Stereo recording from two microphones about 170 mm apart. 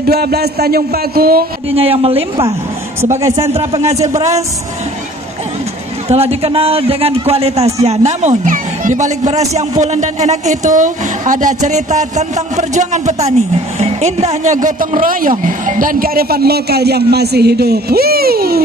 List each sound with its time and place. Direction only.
0.0 s speech: 65° right (ahead or behind)
1.8 s speech: 35° right (ahead or behind)
3.2 s a man's voice: 20° right (ahead or behind)
6.0 s a man's voice: 35° right (ahead or behind); by 18.6 s 65° right (ahead or behind)